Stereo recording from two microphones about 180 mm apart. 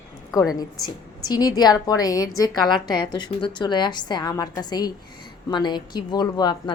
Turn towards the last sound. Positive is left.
turn(degrees=25)  # may be behind; listen again after turning